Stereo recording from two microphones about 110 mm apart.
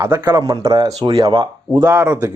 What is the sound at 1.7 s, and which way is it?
Speech, 20° right (ahead or behind).